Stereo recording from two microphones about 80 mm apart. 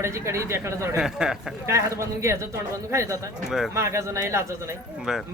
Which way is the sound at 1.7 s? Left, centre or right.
Right.